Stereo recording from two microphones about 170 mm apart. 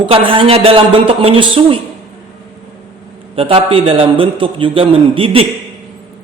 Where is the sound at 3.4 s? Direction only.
35° right (ahead or behind).